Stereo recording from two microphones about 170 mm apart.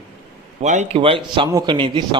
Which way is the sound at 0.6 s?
45° right (ahead or behind).